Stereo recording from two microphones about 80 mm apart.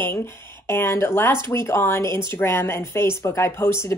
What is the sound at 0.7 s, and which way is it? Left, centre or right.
A woman's voice, left.